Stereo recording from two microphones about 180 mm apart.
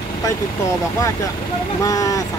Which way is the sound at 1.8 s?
20° left (ahead or behind).